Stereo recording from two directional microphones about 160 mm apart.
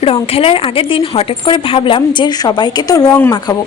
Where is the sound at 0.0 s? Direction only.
35° left (ahead or behind).